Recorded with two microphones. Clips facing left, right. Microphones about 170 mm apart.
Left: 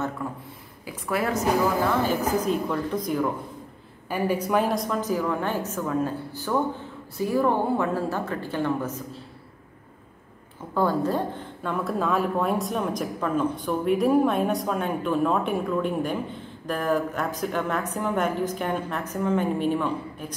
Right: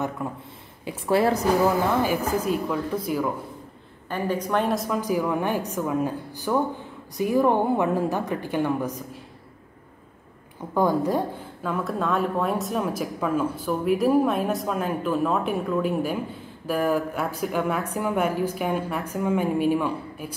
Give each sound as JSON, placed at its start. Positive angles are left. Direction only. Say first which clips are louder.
{"t": 0.2, "sound": "a woman's voice", "louder": "right 1 dB", "side_deg": -20}
{"t": 0.8, "sound": "a woman's voice", "louder": "right 6 dB", "side_deg": -30}
{"t": 1.9, "sound": "a woman's voice", "louder": "right 1 dB", "side_deg": -10}
{"t": 4.1, "sound": "a woman's voice", "louder": "left 1 dB", "side_deg": 10}
{"t": 10.7, "sound": "a woman's voice", "louder": "right 2 dB", "side_deg": -15}